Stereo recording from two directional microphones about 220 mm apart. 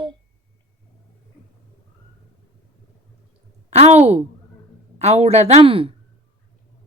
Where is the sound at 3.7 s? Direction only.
30° right (ahead or behind).